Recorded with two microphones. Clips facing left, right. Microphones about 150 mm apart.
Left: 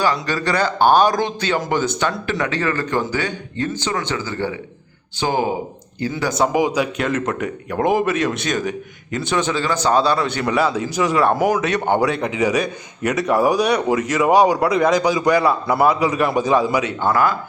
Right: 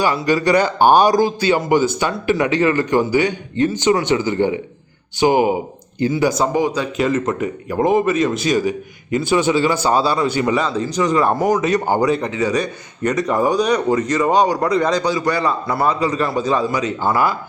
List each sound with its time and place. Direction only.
0.0 s speech: 15° right (ahead or behind)
6.3 s a man's voice: centre (ahead or behind)
17.0 s speech: 10° right (ahead or behind)